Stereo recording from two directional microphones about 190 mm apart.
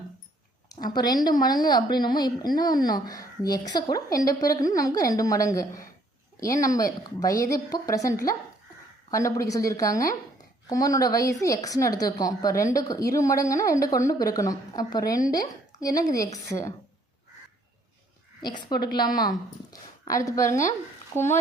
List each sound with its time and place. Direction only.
0.7 s a woman's voice: 20° left (ahead or behind)
18.4 s a woman's voice: 25° left (ahead or behind)
20.4 s speech: 40° left (ahead or behind)
21.1 s a woman's voice: 15° left (ahead or behind)